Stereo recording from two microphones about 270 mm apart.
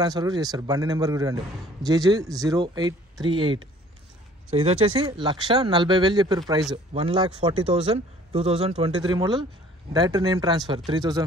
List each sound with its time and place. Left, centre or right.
0.0 s speech: centre
4.6 s speech: centre